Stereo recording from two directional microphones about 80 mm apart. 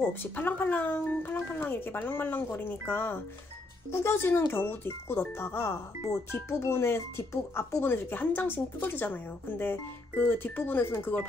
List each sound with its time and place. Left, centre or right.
0.2 s speech: left